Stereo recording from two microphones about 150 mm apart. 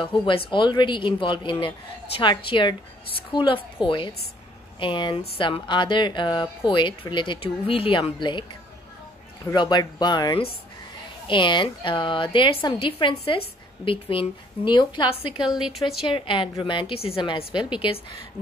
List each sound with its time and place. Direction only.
0.2 s speech: 35° left (ahead or behind)
9.5 s speech: 30° left (ahead or behind)
15.6 s a woman's voice: centre (ahead or behind)
16.1 s speech: 35° left (ahead or behind)